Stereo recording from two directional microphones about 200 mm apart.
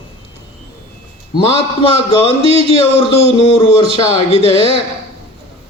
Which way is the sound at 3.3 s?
30° left (ahead or behind).